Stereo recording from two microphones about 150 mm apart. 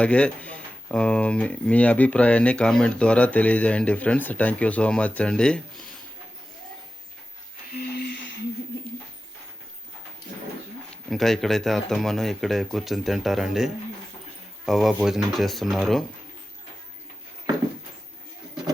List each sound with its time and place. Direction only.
0.0 s speech: 10° left (ahead or behind)
7.8 s a sound: 90° left
11.1 s speech: centre (ahead or behind)